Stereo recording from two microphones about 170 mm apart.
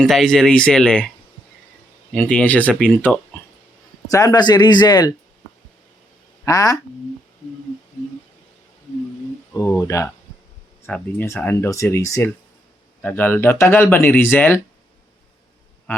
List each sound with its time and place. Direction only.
0.0 s speech: centre (ahead or behind)
2.1 s speech: 10° left (ahead or behind)
4.1 s speech: 20° left (ahead or behind)
6.4 s speech: 20° left (ahead or behind)
9.5 s speech: 10° left (ahead or behind)
15.9 s a sound: 10° left (ahead or behind)